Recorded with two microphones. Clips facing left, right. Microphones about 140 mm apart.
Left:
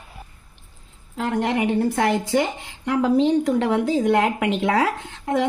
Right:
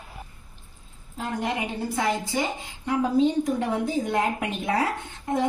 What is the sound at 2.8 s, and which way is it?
A woman's voice, 85° left.